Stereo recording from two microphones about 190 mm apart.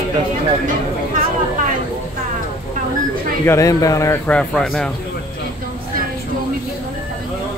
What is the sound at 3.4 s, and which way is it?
Speech, 15° left (ahead or behind).